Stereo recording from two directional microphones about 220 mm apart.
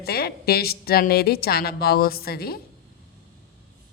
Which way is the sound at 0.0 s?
45° left (ahead or behind).